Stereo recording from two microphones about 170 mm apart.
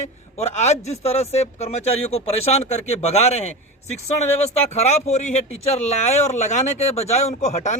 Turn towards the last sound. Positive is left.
turn(degrees=45)  # may be behind; listen again after turning